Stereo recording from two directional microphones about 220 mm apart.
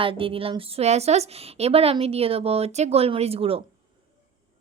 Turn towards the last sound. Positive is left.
turn(degrees=-25)  # may be behind; listen again after turning